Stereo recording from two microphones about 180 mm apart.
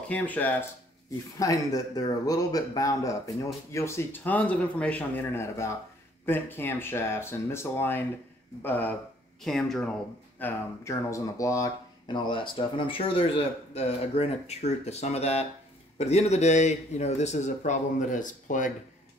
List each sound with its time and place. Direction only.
0.1 s speech: 10° left (ahead or behind)
10.4 s speech: 15° left (ahead or behind); by 18.7 s 45° left (ahead or behind)